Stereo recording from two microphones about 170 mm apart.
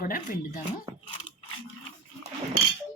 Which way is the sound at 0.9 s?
25° right (ahead or behind).